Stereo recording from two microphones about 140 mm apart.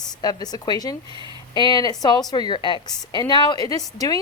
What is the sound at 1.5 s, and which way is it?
A woman's voice, 30° left (ahead or behind).